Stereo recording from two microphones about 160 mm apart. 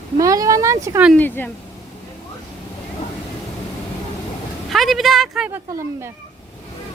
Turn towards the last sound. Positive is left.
turn(degrees=-15)  # may be behind; listen again after turning